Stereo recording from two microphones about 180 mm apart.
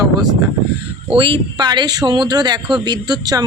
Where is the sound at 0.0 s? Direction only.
20° right (ahead or behind).